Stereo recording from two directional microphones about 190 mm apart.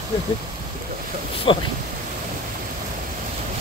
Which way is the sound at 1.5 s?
25° left (ahead or behind).